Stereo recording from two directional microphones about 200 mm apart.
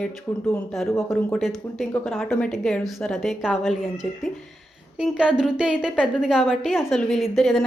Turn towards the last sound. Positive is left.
turn(degrees=0)  # may be behind; listen again after turning